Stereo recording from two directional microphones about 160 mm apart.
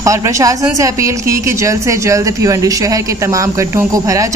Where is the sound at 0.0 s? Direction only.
20° right (ahead or behind).